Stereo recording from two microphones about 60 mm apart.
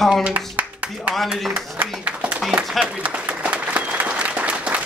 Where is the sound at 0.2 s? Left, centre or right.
Right.